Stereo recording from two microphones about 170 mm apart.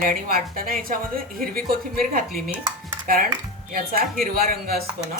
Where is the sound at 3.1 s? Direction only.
55° right (ahead or behind).